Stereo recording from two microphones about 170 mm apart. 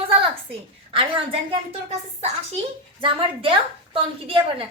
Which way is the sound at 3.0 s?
30° right (ahead or behind).